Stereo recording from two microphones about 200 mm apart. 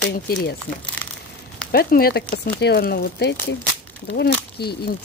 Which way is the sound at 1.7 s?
50° left (ahead or behind).